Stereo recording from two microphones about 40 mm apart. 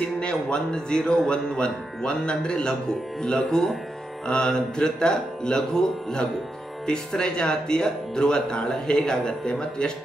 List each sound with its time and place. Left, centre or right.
0.2 s speech: left